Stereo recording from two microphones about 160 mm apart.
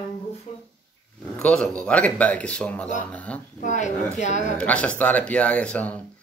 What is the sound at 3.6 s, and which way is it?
Speech, 50° left (ahead or behind).